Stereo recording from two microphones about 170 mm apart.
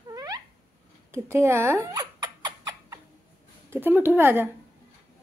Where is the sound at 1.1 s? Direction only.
15° right (ahead or behind).